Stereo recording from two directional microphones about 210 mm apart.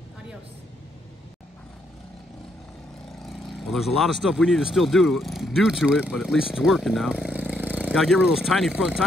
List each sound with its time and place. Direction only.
3.2 s speech: centre (ahead or behind)